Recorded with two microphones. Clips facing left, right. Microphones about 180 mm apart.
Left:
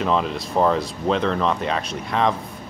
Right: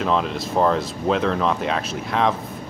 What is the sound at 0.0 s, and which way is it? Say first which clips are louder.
Speech: even; centre (ahead or behind).